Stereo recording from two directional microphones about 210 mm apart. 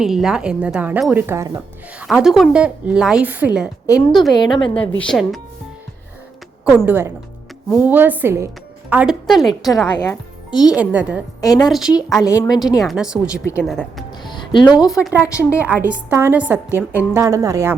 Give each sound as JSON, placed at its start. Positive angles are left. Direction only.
{"t": 0.0, "sound": "a woman's voice", "side_deg": 0}
{"t": 3.8, "sound": "a woman's voice", "side_deg": 15}
{"t": 4.9, "sound": "a woman's voice", "side_deg": 0}
{"t": 6.7, "sound": "a woman's voice", "side_deg": -5}
{"t": 9.9, "sound": "speech", "side_deg": 20}
{"t": 10.6, "sound": "a woman's voice", "side_deg": -5}
{"t": 11.3, "sound": "a woman's voice", "side_deg": 15}
{"t": 11.7, "sound": "a woman's voice", "side_deg": -5}
{"t": 12.2, "sound": "a woman's voice", "side_deg": 15}
{"t": 12.8, "sound": "a woman's voice", "side_deg": 0}
{"t": 13.2, "sound": "a woman's voice", "side_deg": 15}
{"t": 13.7, "sound": "a woman's voice", "side_deg": 0}
{"t": 14.3, "sound": "music", "side_deg": 20}
{"t": 14.8, "sound": "a woman's voice", "side_deg": -5}